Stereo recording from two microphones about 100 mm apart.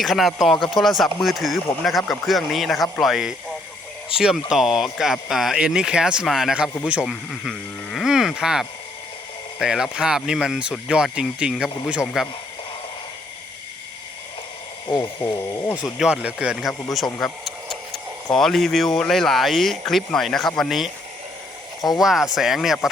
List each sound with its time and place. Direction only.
0.0 s speech: centre (ahead or behind)
15.2 s speech: 60° left (ahead or behind)
15.7 s speech: 10° right (ahead or behind)
21.8 s speech: 40° left (ahead or behind)
22.0 s speech: 5° right (ahead or behind)